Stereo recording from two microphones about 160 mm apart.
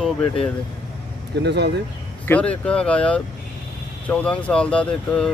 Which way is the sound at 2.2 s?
10° left (ahead or behind).